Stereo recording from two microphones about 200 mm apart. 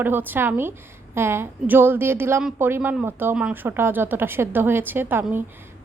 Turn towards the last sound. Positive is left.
turn(degrees=-10)  # may be behind; listen again after turning